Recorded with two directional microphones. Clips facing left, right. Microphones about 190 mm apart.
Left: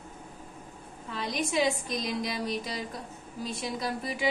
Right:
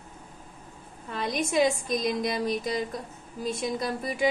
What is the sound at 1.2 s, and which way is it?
A woman's voice, 50° right (ahead or behind).